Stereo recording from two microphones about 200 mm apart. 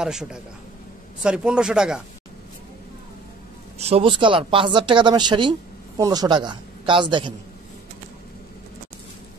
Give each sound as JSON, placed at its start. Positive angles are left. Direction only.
{"t": 0.0, "sound": "a man's voice", "side_deg": -5}
{"t": 3.7, "sound": "speech", "side_deg": -30}